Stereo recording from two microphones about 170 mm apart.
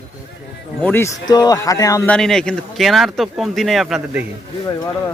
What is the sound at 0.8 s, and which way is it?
Speech, 10° left (ahead or behind).